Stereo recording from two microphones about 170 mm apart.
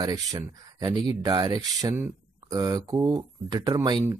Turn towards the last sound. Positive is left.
turn(degrees=-25)  # may be behind; listen again after turning